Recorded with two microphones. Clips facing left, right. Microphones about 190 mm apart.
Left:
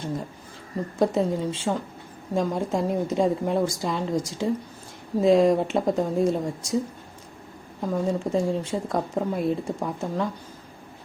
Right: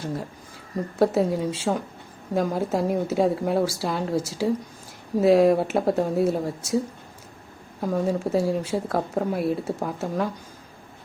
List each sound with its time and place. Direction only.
0.9 s a woman's voice: 5° right (ahead or behind)
7.8 s speech: 10° right (ahead or behind)